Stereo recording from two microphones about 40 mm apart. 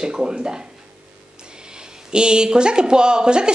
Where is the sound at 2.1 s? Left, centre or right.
Right.